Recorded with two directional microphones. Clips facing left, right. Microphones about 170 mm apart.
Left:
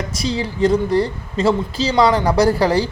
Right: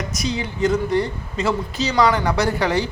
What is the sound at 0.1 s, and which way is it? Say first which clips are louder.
A man's voice: left 3 dB; 30° left (ahead or behind).